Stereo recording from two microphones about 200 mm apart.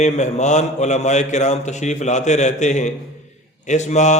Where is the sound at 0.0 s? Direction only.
35° left (ahead or behind).